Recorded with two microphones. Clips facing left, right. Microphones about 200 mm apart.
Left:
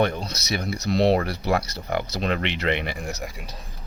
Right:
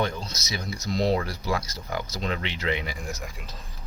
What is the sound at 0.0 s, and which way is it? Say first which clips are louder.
Speech: left 5 dB; 60° left (ahead or behind).